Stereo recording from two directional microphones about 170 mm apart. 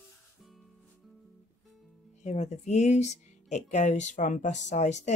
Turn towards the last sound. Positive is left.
turn(degrees=45)  # may be behind; listen again after turning